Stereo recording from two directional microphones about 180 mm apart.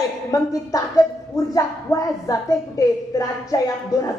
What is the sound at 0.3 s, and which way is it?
A woman's voice, 20° left (ahead or behind).